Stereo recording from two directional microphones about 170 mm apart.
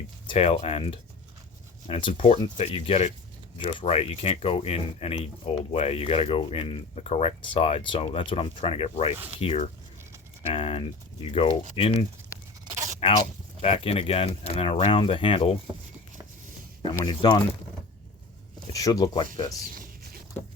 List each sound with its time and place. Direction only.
0.3 s speech: 35° left (ahead or behind)
17.0 s speech: 25° left (ahead or behind)
18.7 s speech: 20° left (ahead or behind)
19.6 s a sound: 60° right (ahead or behind)